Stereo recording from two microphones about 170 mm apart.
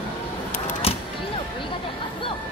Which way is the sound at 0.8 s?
35° left (ahead or behind).